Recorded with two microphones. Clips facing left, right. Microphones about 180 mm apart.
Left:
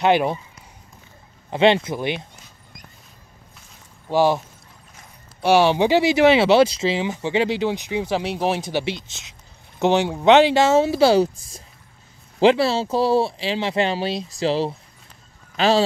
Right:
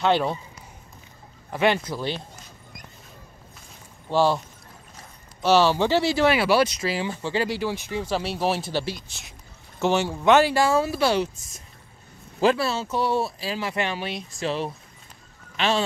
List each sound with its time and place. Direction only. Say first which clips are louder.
0.0 s speech: left 4 dB; 15° left (ahead or behind)
1.5 s speech: left 5 dB; 25° left (ahead or behind)
4.1 s speech: left 3 dB; 15° left (ahead or behind)
5.4 s speech: left 3 dB; 15° left (ahead or behind); by 15.8 s 35° left (ahead or behind)